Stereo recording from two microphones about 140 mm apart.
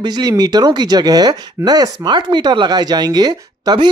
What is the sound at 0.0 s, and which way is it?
A woman's voice, 30° right (ahead or behind).